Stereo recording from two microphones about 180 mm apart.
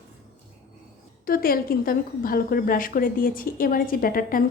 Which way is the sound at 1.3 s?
55° left (ahead or behind).